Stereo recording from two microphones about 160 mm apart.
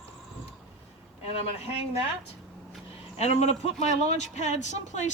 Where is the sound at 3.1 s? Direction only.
40° left (ahead or behind).